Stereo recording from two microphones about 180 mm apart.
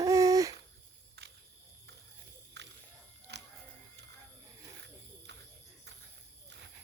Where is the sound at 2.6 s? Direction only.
70° right (ahead or behind).